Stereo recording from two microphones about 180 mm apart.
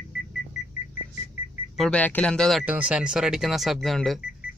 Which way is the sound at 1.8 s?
5° left (ahead or behind).